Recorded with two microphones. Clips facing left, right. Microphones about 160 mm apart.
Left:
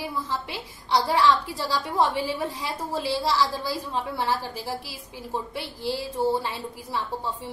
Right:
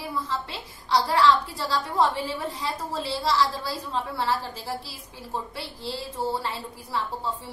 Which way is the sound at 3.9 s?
15° left (ahead or behind).